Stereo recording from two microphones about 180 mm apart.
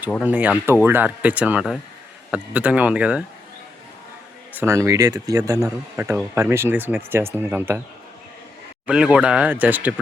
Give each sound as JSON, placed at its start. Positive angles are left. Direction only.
{"t": 0.2, "sound": "speech", "side_deg": -10}
{"t": 4.6, "sound": "speech", "side_deg": -15}
{"t": 8.9, "sound": "speech", "side_deg": -5}